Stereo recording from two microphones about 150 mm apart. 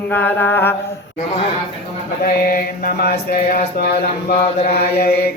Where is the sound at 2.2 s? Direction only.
90° left.